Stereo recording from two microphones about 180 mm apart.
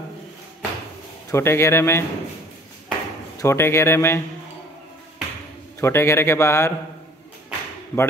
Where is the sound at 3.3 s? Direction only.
15° left (ahead or behind).